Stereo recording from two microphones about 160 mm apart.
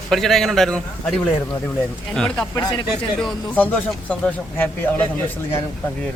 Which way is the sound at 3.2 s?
5° left (ahead or behind).